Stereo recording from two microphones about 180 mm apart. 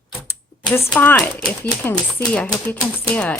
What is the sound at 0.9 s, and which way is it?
Speech, 10° left (ahead or behind).